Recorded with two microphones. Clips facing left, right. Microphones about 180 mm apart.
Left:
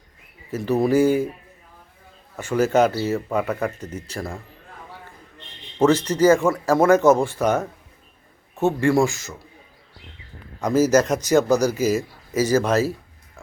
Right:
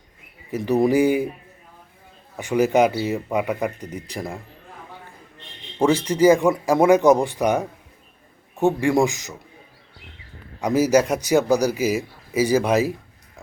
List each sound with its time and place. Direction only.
0.5 s speech: 15° right (ahead or behind)
2.3 s speech: 15° right (ahead or behind)
5.8 s speech: 10° right (ahead or behind)
10.6 s a man's voice: 15° right (ahead or behind)